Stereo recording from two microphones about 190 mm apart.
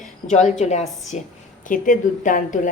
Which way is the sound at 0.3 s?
40° left (ahead or behind).